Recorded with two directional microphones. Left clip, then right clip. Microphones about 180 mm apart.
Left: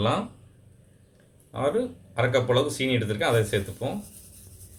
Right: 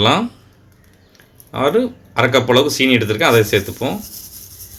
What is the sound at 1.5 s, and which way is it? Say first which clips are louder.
A man's voice: right 10 dB; 45° right (ahead or behind).